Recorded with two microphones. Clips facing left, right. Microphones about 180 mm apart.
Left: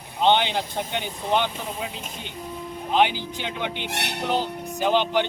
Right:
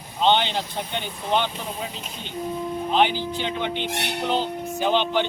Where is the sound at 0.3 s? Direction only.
15° left (ahead or behind).